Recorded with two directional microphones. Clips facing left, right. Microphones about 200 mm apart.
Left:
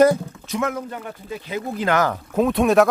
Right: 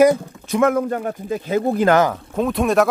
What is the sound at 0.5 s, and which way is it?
Speech, 55° right (ahead or behind).